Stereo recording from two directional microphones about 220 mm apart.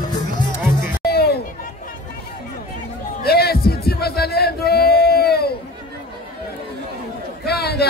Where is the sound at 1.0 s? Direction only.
45° left (ahead or behind).